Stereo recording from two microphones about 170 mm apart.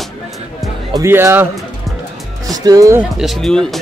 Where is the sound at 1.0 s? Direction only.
15° right (ahead or behind).